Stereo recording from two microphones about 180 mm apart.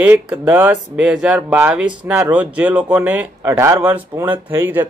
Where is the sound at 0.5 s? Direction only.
10° right (ahead or behind).